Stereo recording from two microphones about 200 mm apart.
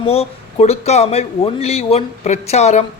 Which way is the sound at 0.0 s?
30° left (ahead or behind).